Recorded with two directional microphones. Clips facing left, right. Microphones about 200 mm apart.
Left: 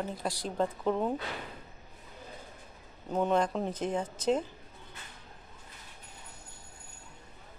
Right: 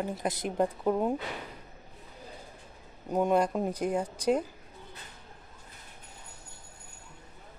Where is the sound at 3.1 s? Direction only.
10° right (ahead or behind).